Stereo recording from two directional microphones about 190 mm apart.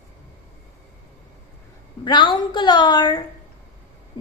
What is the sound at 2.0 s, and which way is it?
A woman's voice, 25° left (ahead or behind).